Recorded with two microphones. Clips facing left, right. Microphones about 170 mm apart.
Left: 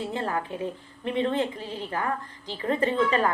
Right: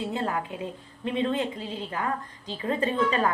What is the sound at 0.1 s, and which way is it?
A woman's voice, 20° right (ahead or behind).